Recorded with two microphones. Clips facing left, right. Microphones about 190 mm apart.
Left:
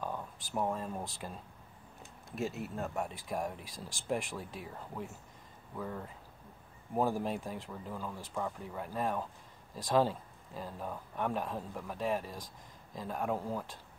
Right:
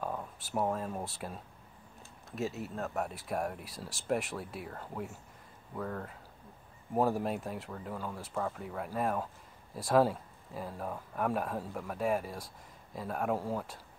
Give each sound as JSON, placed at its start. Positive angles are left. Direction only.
{"t": 0.0, "sound": "speech", "side_deg": -5}